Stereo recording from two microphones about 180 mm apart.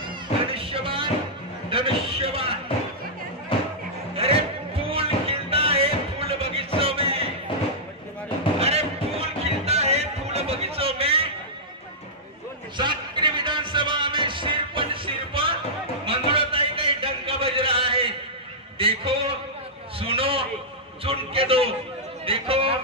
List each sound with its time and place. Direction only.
0.0 s music: 30° right (ahead or behind)
1.7 s a sound: 30° right (ahead or behind)
3.5 s music: 30° left (ahead or behind)
4.2 s music: 30° right (ahead or behind)
8.5 s music: 35° right (ahead or behind)
12.7 s music: 25° right (ahead or behind)
16.1 s a sound: 30° right (ahead or behind)
22.2 s chatter: 30° right (ahead or behind)